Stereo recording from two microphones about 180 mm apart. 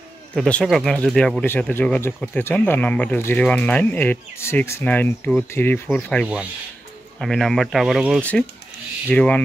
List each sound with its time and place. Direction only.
0.3 s speech: 5° left (ahead or behind)